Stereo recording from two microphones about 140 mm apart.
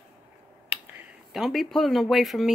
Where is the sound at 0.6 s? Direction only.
15° right (ahead or behind).